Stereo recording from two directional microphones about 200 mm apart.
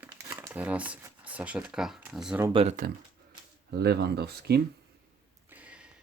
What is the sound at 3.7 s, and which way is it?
Speech, 55° right (ahead or behind).